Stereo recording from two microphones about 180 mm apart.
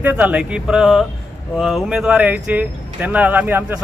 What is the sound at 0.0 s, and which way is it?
Speech, 10° right (ahead or behind).